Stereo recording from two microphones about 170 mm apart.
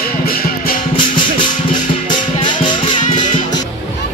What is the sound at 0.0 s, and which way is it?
Music, 60° left (ahead or behind).